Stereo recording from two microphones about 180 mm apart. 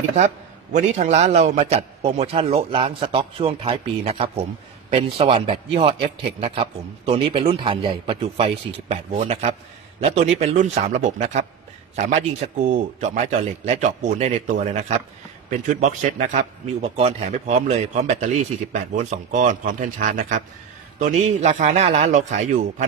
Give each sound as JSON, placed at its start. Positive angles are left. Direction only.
{"t": 0.7, "sound": "a man's voice", "side_deg": -40}